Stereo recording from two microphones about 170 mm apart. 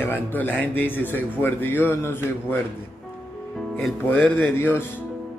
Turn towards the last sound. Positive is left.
turn(degrees=10)  # may be behind; listen again after turning